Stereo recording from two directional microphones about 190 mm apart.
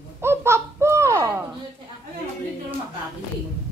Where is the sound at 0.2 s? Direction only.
15° right (ahead or behind).